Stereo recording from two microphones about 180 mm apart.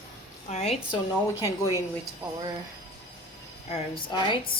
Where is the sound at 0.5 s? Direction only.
35° left (ahead or behind).